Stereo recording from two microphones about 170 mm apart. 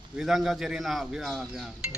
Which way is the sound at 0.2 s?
Centre (ahead or behind).